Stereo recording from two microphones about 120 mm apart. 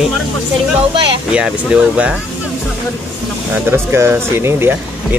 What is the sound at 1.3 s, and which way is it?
Speech, 5° right (ahead or behind).